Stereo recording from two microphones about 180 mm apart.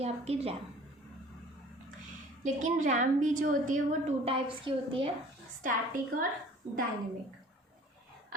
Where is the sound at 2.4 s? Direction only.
45° right (ahead or behind).